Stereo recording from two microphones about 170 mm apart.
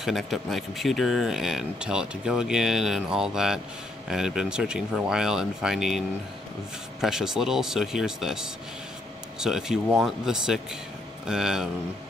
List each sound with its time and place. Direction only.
0.0 s speech: centre (ahead or behind)